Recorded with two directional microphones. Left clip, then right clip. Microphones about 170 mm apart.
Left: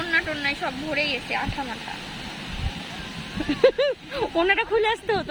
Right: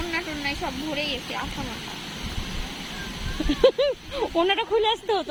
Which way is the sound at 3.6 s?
15° left (ahead or behind).